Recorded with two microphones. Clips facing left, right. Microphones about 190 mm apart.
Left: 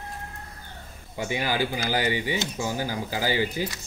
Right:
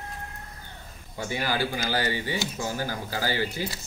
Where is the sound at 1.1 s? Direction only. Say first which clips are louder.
Left 2 dB; 15° left (ahead or behind).